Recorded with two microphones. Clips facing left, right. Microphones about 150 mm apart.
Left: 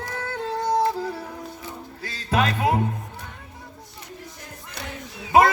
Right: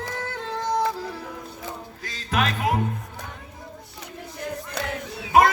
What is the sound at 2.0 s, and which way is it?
Music, 30° left (ahead or behind).